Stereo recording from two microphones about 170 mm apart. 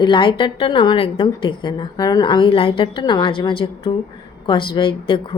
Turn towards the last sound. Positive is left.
turn(degrees=30)  # may be behind; listen again after turning